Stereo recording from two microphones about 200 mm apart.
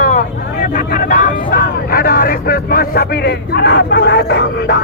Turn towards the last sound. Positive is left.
turn(degrees=55)  # may be behind; listen again after turning